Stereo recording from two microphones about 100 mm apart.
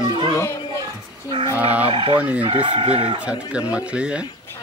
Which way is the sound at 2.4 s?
65° right (ahead or behind).